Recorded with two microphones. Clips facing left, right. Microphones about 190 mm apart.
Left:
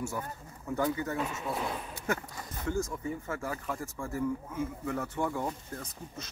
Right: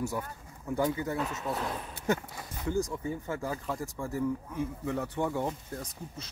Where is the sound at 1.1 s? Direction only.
5° left (ahead or behind).